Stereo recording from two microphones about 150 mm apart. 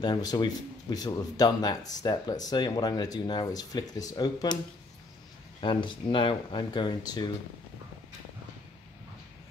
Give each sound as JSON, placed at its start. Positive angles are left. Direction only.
{"t": 0.0, "sound": "speech", "side_deg": 25}
{"t": 5.6, "sound": "speech", "side_deg": 35}